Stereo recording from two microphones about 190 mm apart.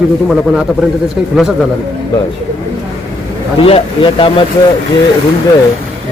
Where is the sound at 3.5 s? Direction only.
30° left (ahead or behind).